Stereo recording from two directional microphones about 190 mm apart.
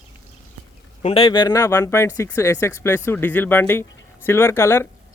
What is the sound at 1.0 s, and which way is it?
Speech, 30° left (ahead or behind).